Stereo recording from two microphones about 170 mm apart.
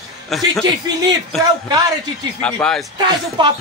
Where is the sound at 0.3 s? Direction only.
Centre (ahead or behind).